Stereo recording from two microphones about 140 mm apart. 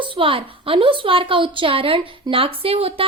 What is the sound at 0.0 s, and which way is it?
A woman's voice, 40° right (ahead or behind).